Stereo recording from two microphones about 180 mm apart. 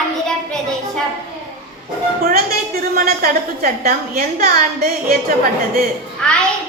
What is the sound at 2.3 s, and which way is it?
A woman's voice, 55° right (ahead or behind).